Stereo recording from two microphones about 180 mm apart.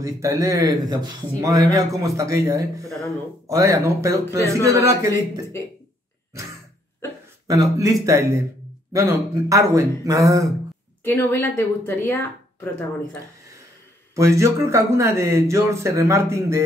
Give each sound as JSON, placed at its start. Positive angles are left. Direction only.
{"t": 0.0, "sound": "speech", "side_deg": -15}
{"t": 7.4, "sound": "speech", "side_deg": -20}
{"t": 11.1, "sound": "speech", "side_deg": 15}
{"t": 14.1, "sound": "speech", "side_deg": -15}